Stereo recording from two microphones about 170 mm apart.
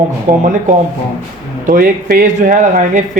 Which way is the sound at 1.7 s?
60° right (ahead or behind).